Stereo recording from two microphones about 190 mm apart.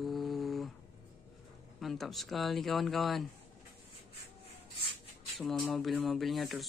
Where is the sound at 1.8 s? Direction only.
Centre (ahead or behind).